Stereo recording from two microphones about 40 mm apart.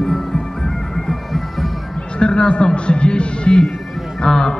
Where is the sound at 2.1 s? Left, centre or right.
Left.